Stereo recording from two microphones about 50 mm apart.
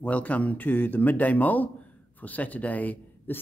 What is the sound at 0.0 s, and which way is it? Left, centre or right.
A man's voice, left.